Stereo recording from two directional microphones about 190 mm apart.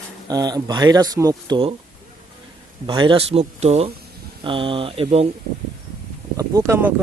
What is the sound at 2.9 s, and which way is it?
Speech, 25° right (ahead or behind).